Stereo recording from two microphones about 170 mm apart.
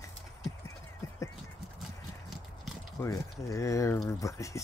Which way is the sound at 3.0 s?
20° left (ahead or behind).